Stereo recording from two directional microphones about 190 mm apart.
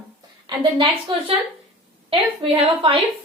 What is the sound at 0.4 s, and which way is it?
A woman's voice, 25° right (ahead or behind).